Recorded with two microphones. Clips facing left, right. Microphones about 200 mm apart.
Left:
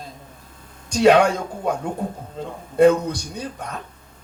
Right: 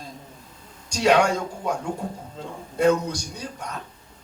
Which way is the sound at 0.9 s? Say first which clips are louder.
Left 7 dB; 55° left (ahead or behind).